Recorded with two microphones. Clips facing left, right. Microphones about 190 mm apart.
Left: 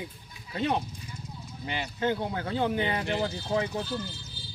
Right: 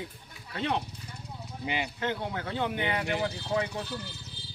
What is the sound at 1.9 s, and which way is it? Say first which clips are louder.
Speech: left 4 dB; 25° left (ahead or behind).